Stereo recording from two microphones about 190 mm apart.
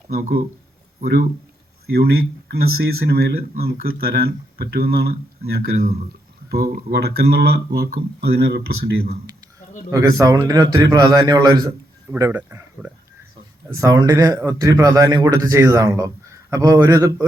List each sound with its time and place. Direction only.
1.9 s speech: 55° right (ahead or behind)
9.9 s a man's voice: 20° right (ahead or behind)